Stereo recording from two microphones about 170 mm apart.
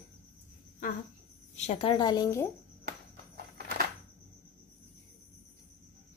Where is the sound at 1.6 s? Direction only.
35° left (ahead or behind).